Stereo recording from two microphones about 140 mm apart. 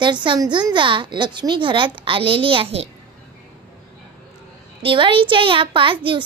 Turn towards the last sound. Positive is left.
turn(degrees=-40)  # may be behind; listen again after turning